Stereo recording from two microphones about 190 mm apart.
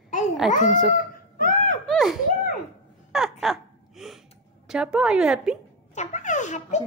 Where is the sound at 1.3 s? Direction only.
45° left (ahead or behind).